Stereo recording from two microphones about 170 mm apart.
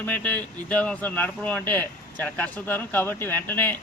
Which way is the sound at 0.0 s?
10° left (ahead or behind).